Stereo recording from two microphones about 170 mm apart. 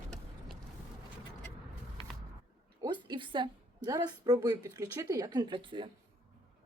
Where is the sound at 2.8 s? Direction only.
25° right (ahead or behind).